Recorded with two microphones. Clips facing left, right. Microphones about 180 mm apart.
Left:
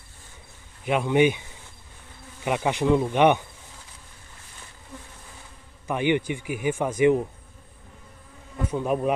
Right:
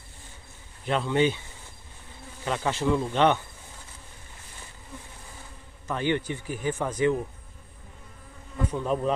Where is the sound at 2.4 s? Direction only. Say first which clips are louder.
Left 3 dB; 15° left (ahead or behind).